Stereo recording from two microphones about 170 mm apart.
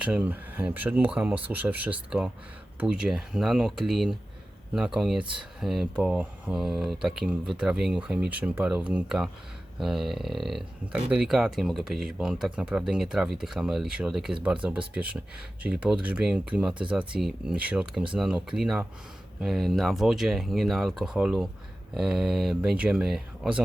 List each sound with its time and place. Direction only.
0.0 s speech: 10° right (ahead or behind)
5.2 s speech: 30° right (ahead or behind)
5.5 s speech: centre (ahead or behind)